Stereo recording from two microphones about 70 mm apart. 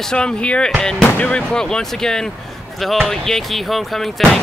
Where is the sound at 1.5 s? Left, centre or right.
Centre.